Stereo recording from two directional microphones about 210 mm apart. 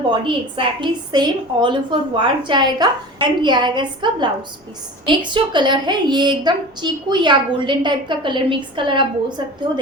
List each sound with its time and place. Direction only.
0.1 s a woman's voice: 25° right (ahead or behind)